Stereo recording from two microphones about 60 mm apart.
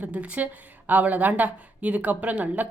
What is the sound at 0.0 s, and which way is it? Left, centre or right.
A woman's voice, right.